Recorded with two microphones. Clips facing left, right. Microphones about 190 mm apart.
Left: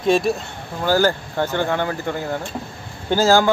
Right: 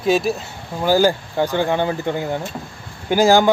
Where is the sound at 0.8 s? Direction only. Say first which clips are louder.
Right 2 dB; 15° right (ahead or behind).